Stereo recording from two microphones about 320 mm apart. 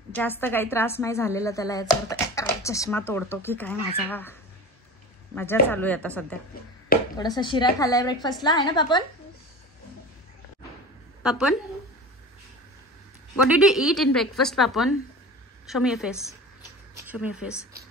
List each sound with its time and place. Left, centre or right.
0.1 s a woman's voice: centre
11.2 s a woman's voice: centre
13.6 s a woman's voice: centre